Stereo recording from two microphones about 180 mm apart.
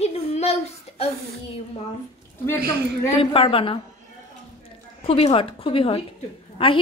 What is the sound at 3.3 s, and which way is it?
Speech, 30° left (ahead or behind).